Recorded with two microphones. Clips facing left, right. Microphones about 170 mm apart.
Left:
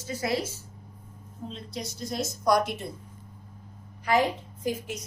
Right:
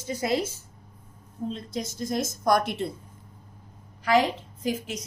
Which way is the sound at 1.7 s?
50° right (ahead or behind).